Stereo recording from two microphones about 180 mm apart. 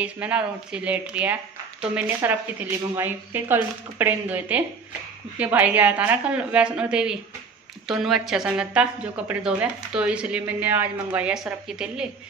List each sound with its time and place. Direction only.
0.0 s speech: 5° right (ahead or behind)